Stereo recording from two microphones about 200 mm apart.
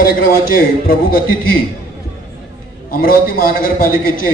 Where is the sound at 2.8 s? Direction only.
45° left (ahead or behind).